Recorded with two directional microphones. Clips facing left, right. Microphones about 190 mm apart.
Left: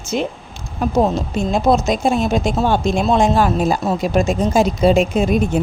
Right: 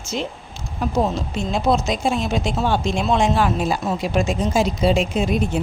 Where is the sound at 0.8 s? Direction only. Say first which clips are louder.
Left 4 dB; 45° left (ahead or behind).